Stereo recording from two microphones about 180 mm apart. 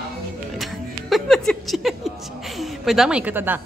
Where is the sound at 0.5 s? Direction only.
Centre (ahead or behind).